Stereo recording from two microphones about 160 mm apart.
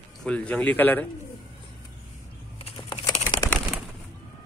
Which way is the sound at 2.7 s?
25° left (ahead or behind).